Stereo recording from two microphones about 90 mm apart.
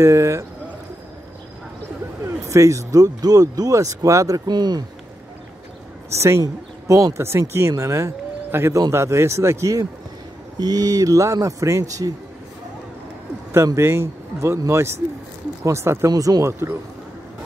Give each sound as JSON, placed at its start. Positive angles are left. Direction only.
{"t": 0.0, "sound": "speech", "side_deg": -30}
{"t": 2.2, "sound": "speech", "side_deg": -35}
{"t": 4.5, "sound": "speech", "side_deg": -50}
{"t": 6.0, "sound": "speech", "side_deg": -30}
{"t": 10.6, "sound": "speech", "side_deg": -45}
{"t": 13.7, "sound": "speech", "side_deg": -30}
{"t": 16.1, "sound": "speech", "side_deg": -40}